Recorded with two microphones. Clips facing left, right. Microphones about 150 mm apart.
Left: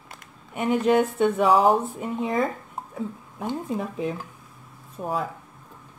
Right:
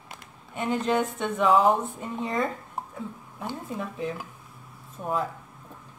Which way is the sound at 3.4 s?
20° left (ahead or behind).